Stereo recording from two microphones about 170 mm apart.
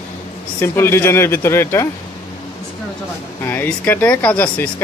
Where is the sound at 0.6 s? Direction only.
15° left (ahead or behind).